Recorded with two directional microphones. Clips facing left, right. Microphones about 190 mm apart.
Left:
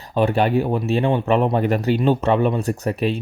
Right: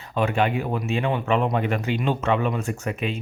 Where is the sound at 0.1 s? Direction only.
35° left (ahead or behind).